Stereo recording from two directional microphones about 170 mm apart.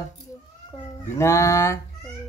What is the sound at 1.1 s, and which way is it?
Speech, 15° left (ahead or behind).